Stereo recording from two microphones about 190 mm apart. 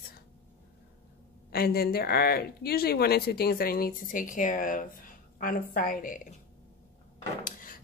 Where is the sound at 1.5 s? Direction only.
55° left (ahead or behind).